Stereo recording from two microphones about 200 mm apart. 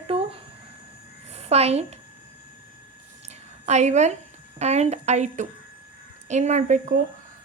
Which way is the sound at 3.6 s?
35° right (ahead or behind).